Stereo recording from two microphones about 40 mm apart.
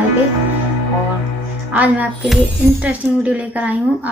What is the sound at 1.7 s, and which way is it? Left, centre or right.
A woman's voice, right.